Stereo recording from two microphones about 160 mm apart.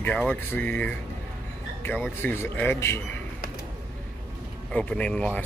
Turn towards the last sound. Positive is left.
turn(degrees=5)  # may be behind; listen again after turning